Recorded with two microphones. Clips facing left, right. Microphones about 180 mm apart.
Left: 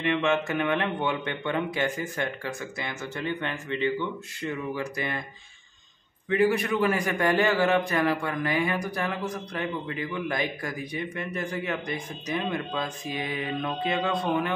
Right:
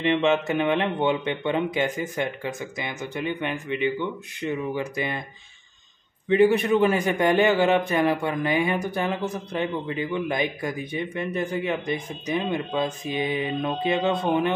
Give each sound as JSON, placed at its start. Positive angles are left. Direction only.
{"t": 0.0, "sound": "a man's voice", "side_deg": -20}
{"t": 6.2, "sound": "a man's voice", "side_deg": -20}